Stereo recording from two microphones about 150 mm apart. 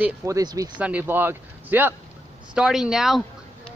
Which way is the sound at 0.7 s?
10° right (ahead or behind).